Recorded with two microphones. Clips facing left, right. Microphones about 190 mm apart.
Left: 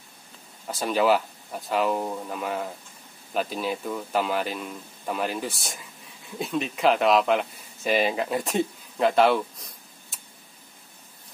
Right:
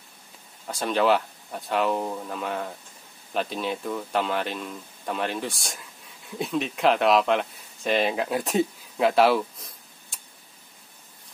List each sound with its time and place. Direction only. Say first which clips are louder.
0.7 s speech: even; 5° left (ahead or behind)